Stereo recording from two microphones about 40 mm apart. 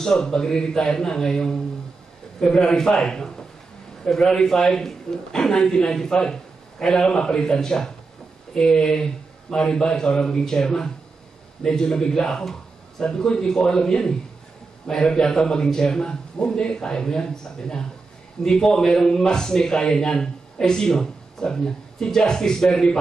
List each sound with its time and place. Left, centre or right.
0.0 s a man's voice: centre